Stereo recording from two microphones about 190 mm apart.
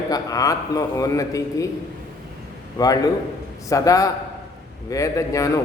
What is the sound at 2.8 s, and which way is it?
A man's voice, 20° left (ahead or behind).